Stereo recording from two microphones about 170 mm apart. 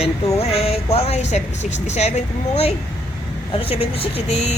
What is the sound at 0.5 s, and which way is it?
A woman's voice, 35° left (ahead or behind).